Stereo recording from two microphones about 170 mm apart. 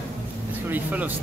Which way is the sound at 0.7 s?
10° right (ahead or behind).